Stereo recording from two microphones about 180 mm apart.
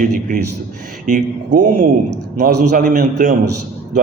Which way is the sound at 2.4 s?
55° right (ahead or behind).